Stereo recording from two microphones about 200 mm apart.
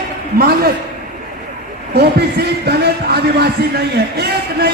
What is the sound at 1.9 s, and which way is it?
A man's voice, 55° right (ahead or behind).